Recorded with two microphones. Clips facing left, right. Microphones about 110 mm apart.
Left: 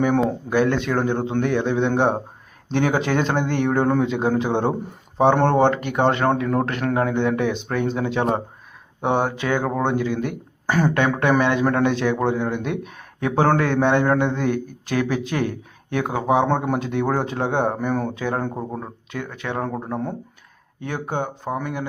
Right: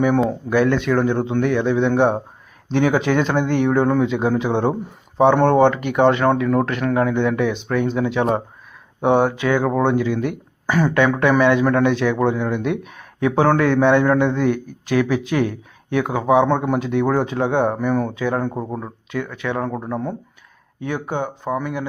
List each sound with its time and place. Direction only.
0.3 s speech: 30° left (ahead or behind)
5.2 s speech: 40° left (ahead or behind)
20.8 s speech: 40° left (ahead or behind)